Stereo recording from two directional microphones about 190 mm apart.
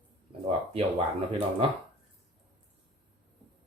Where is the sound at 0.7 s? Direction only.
30° right (ahead or behind).